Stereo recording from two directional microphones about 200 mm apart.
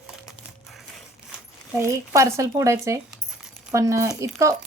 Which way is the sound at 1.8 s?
15° right (ahead or behind).